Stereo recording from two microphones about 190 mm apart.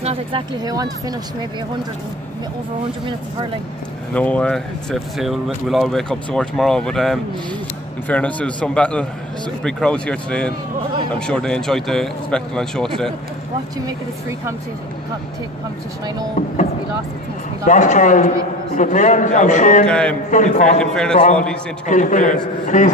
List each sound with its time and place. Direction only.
0.0 s speech: 30° right (ahead or behind)
0.7 s speech: 20° right (ahead or behind)
4.1 s a man's voice: 5° left (ahead or behind)
17.6 s a man's voice: 40° left (ahead or behind)
19.9 s speech: 5° left (ahead or behind)
20.2 s a man's voice: 40° left (ahead or behind)
20.8 s speech: 5° left (ahead or behind)
21.8 s a man's voice: 40° left (ahead or behind)